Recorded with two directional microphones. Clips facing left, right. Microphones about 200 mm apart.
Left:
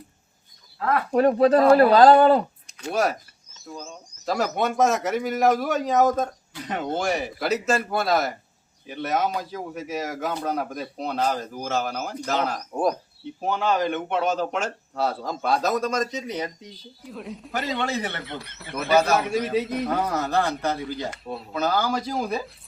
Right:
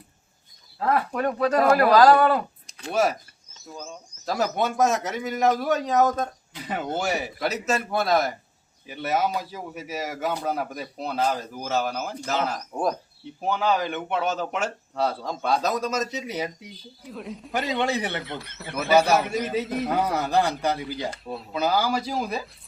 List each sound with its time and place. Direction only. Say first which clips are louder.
1.1 s speech: left 6 dB; 30° left (ahead or behind)
2.9 s speech: right 1 dB; centre (ahead or behind)
4.3 s speech: left 1 dB; centre (ahead or behind)
17.7 s speech: right 2 dB; 15° right (ahead or behind)
18.2 s speech: right 1 dB; centre (ahead or behind)
20.2 s speech: right 1 dB; 15° right (ahead or behind)
21.2 s speech: even; centre (ahead or behind)